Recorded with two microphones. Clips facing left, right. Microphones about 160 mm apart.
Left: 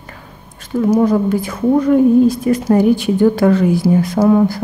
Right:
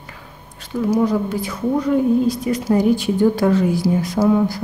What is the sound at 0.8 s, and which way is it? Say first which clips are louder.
A woman's voice: left 5 dB; 50° left (ahead or behind).